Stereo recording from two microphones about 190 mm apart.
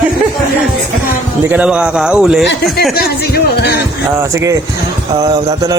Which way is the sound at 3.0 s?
55° left (ahead or behind).